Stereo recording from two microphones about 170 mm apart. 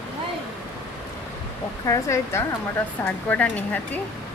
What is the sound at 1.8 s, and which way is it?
Speech, 15° left (ahead or behind).